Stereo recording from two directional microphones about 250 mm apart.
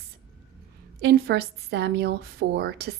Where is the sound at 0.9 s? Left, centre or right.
Right.